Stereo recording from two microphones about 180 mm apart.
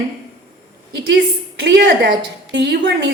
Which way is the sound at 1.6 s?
70° right (ahead or behind).